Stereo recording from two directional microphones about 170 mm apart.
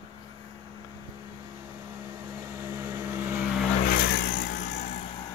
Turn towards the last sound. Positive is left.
turn(degrees=30)  # may be behind; listen again after turning